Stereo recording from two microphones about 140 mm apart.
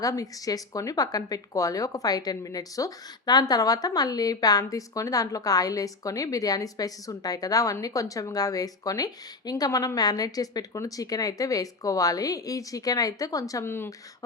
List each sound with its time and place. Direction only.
0.0 s speech: 25° left (ahead or behind)